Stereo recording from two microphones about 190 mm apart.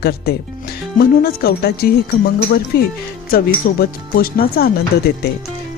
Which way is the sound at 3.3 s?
50° left (ahead or behind).